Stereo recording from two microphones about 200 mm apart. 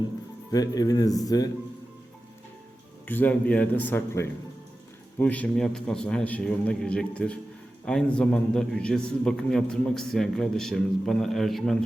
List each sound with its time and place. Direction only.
0.5 s speech: 20° left (ahead or behind)
3.1 s a man's voice: 10° left (ahead or behind)